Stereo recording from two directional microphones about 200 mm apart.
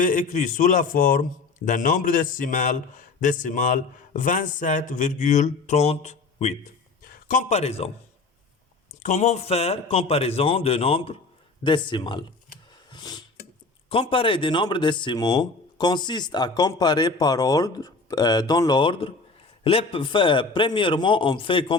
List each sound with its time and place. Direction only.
0.0 s a man's voice: 40° left (ahead or behind)
9.0 s speech: 35° left (ahead or behind)
12.9 s a sound: 20° left (ahead or behind)
13.9 s speech: 25° left (ahead or behind)